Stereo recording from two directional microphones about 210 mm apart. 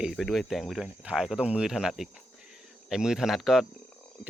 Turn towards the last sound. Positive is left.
turn(degrees=0)  # may be behind; listen again after turning